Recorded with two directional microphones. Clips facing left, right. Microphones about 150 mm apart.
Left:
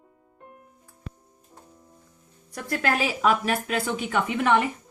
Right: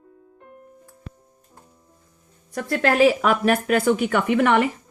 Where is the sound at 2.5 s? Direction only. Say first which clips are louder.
Right 5 dB; 80° right.